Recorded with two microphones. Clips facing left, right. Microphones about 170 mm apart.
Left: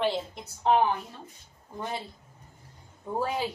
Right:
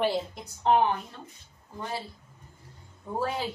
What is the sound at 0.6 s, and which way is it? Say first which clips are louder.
Speech: even; centre (ahead or behind).